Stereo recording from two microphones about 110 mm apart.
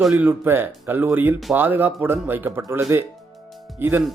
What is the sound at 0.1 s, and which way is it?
Speech, 20° right (ahead or behind).